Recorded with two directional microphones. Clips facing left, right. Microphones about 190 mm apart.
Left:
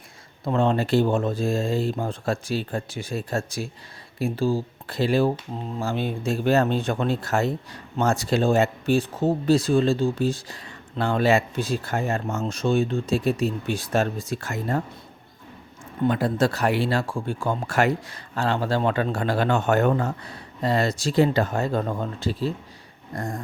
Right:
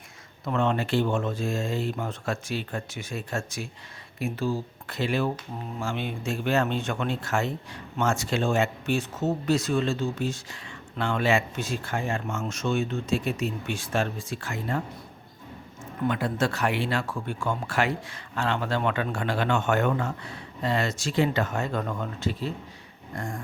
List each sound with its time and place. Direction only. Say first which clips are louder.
0.4 s speech: left 4 dB; 30° left (ahead or behind)
16.0 s speech: left 5 dB; 35° left (ahead or behind)